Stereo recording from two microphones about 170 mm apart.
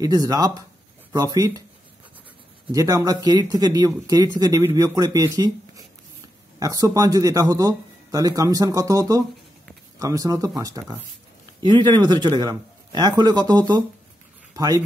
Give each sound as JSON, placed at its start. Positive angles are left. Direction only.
{"t": 0.0, "sound": "speech", "side_deg": -20}
{"t": 2.7, "sound": "speech", "side_deg": -20}